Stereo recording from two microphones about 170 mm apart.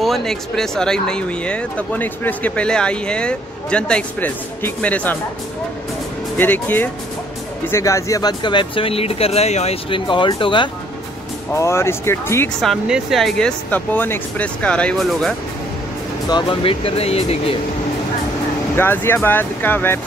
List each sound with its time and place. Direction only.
0.0 s speech: centre (ahead or behind)
6.3 s speech: 10° left (ahead or behind); by 10.7 s 30° left (ahead or behind)
11.5 s speech: 15° left (ahead or behind)
12.6 s speech: centre (ahead or behind)
16.3 s speech: 30° left (ahead or behind)
18.8 s speech: 15° left (ahead or behind)